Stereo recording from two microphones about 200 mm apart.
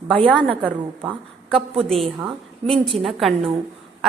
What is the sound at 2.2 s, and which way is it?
Speech, 25° right (ahead or behind).